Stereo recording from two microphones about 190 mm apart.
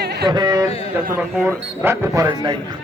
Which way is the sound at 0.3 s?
20° right (ahead or behind).